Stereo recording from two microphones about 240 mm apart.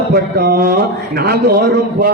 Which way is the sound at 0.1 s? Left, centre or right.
Right.